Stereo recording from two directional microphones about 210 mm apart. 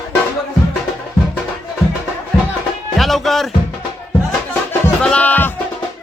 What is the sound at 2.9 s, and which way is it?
Music, centre (ahead or behind).